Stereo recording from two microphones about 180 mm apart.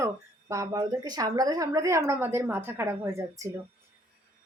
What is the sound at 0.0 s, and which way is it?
Speech, 15° right (ahead or behind).